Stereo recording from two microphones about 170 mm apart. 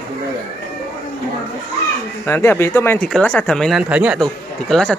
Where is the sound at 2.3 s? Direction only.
15° left (ahead or behind); by 4.2 s 10° right (ahead or behind).